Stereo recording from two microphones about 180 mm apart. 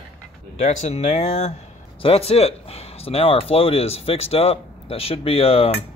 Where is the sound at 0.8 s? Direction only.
35° left (ahead or behind).